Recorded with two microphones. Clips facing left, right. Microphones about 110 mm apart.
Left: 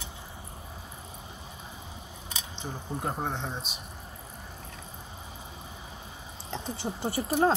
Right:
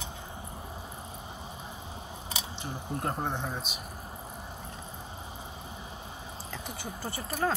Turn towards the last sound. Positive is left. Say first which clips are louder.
# left 7 dB
turn(degrees=25)  # may be behind; listen again after turning